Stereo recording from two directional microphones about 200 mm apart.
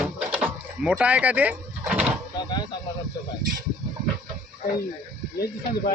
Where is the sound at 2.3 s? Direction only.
20° left (ahead or behind).